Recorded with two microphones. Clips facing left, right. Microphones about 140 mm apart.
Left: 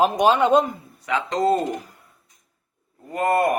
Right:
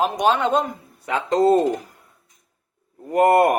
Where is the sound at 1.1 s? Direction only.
40° right (ahead or behind).